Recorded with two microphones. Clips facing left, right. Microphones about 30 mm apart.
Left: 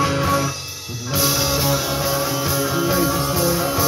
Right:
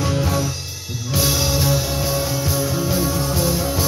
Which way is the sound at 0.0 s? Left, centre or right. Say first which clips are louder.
Left 3 dB; left.